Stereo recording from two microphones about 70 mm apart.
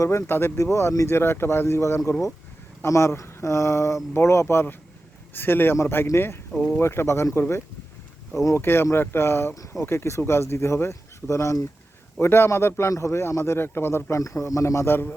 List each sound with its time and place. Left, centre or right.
0.0 s speech: left
0.5 s speech: left
8.6 s speech: left
14.2 s speech: left